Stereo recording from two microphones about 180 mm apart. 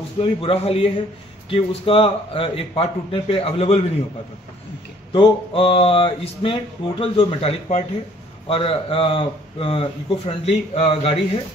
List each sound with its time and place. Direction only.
0.2 s speech: 30° left (ahead or behind)
5.1 s speech: 30° left (ahead or behind)